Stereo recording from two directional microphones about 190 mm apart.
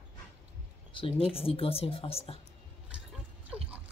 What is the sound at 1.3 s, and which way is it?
Speech, 30° left (ahead or behind).